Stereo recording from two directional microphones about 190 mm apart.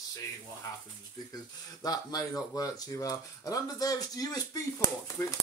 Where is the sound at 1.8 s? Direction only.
20° left (ahead or behind).